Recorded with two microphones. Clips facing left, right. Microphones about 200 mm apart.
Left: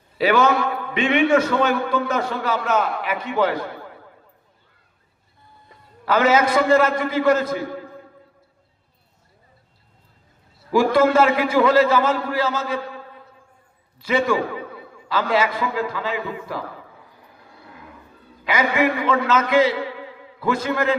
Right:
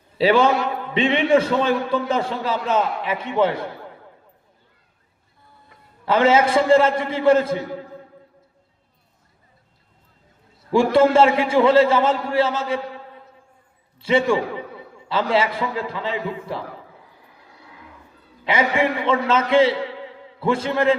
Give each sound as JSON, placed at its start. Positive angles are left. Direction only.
{"t": 0.2, "sound": "a man's voice", "side_deg": -30}
{"t": 6.1, "sound": "a man's voice", "side_deg": -25}
{"t": 10.7, "sound": "a man's voice", "side_deg": -30}
{"t": 14.0, "sound": "a man's voice", "side_deg": -30}
{"t": 18.4, "sound": "a man's voice", "side_deg": -30}